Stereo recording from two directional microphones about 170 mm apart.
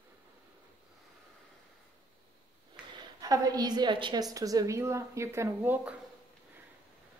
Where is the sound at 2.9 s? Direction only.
20° right (ahead or behind).